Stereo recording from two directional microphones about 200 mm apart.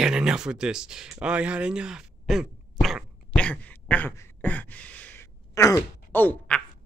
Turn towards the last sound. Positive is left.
turn(degrees=5)  # may be behind; listen again after turning